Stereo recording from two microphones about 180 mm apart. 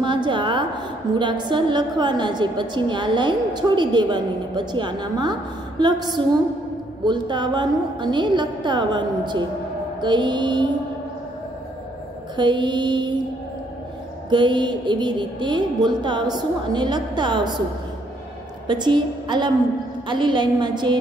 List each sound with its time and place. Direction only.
0.0 s a sound: 25° right (ahead or behind)
1.1 s a woman's voice: 25° right (ahead or behind)
12.4 s a woman's voice: 25° right (ahead or behind)
14.3 s a woman's voice: 25° right (ahead or behind)
18.7 s a woman's voice: 25° right (ahead or behind)